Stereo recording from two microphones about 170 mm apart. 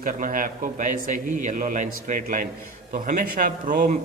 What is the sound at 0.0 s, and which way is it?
A man's voice, 55° right (ahead or behind).